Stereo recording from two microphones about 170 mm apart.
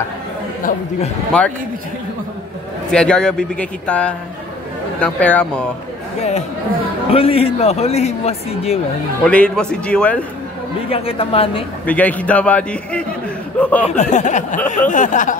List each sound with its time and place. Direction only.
1.3 s a man's voice: 5° left (ahead or behind)
2.9 s a man's voice: 5° left (ahead or behind)
7.1 s a man's voice: 35° left (ahead or behind)
9.2 s a man's voice: 5° left (ahead or behind)
10.9 s a man's voice: 35° left (ahead or behind)
11.8 s a man's voice: 10° left (ahead or behind)
13.8 s speech: 45° left (ahead or behind)